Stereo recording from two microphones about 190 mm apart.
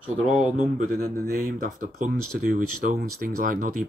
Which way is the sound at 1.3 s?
45° right (ahead or behind).